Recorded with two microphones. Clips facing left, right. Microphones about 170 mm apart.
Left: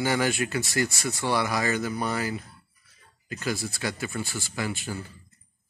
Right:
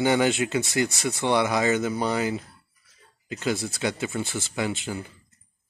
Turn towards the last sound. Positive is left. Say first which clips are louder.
# right 3 dB
turn(degrees=-20)  # may be behind; listen again after turning